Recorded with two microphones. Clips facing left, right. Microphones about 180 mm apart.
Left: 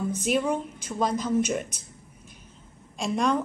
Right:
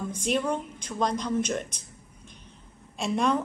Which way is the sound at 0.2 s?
5° left (ahead or behind).